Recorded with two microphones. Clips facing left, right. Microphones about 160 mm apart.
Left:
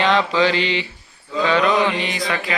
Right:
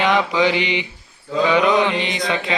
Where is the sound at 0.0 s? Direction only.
15° right (ahead or behind).